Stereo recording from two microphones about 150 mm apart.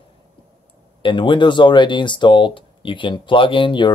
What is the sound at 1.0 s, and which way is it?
Speech, 30° left (ahead or behind).